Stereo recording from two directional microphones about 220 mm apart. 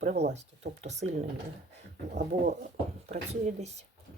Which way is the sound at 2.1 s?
35° right (ahead or behind).